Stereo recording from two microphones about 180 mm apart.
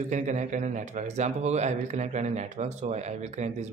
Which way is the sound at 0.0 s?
40° right (ahead or behind).